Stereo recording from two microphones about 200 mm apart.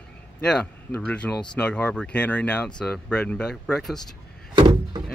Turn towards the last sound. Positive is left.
turn(degrees=-25)  # may be behind; listen again after turning